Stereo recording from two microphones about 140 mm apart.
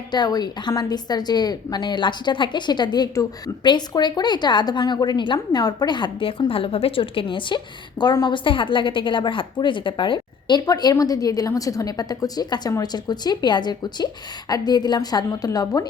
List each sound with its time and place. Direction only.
0.1 s a woman's voice: 30° left (ahead or behind)